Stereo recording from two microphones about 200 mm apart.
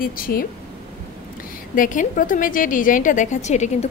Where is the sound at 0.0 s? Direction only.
45° left (ahead or behind).